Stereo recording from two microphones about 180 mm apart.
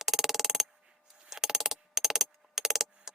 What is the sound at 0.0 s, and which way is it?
Music, centre (ahead or behind).